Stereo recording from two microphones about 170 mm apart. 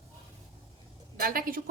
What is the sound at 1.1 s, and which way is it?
Speech, 60° right (ahead or behind).